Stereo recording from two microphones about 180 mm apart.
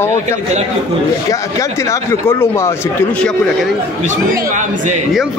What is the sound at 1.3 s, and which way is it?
Speech, 15° left (ahead or behind).